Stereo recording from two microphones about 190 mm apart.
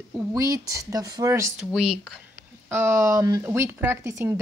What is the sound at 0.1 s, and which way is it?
A woman's voice, 20° right (ahead or behind).